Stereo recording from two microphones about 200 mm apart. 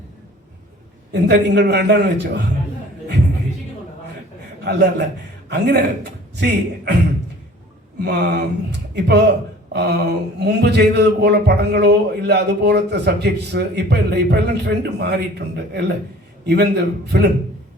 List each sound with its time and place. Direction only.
1.1 s speech: 55° right (ahead or behind)
4.6 s speech: 55° right (ahead or behind)
5.5 s a sound: 55° right (ahead or behind)
6.3 s speech: 55° right (ahead or behind)
8.0 s a sound: 55° right (ahead or behind)
9.0 s speech: 55° right (ahead or behind)